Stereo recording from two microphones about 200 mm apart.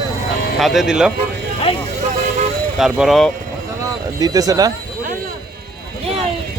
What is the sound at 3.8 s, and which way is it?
Speech, 20° right (ahead or behind).